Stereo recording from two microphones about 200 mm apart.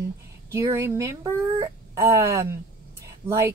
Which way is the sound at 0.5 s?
15° right (ahead or behind).